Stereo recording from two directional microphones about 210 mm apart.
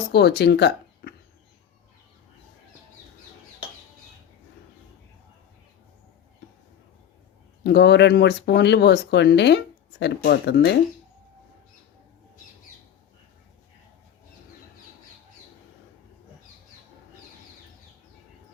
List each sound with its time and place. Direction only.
0.1 s speech: 50° left (ahead or behind)
7.6 s speech: 50° left (ahead or behind)